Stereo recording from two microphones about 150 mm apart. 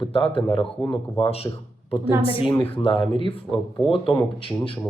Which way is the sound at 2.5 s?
35° left (ahead or behind).